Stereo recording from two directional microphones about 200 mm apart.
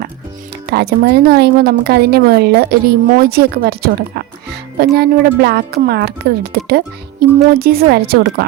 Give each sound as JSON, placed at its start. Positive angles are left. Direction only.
{"t": 0.7, "sound": "a woman's voice", "side_deg": -55}